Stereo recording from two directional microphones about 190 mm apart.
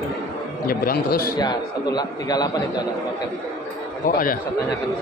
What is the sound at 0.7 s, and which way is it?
Speech, 50° left (ahead or behind).